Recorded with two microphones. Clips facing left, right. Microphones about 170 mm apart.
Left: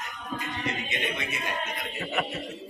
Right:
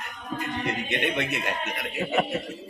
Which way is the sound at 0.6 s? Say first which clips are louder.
Right 4 dB; 65° right (ahead or behind).